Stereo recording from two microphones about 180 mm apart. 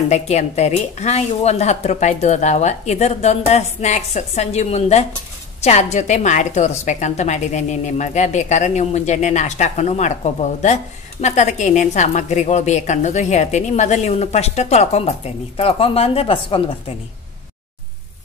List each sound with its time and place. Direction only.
0.1 s a woman's voice: 40° left (ahead or behind)